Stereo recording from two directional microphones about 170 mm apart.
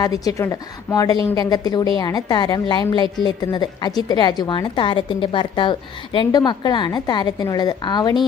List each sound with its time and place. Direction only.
0.0 s a woman's voice: 20° left (ahead or behind)